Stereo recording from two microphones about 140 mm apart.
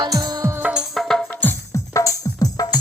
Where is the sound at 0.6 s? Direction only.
5° right (ahead or behind).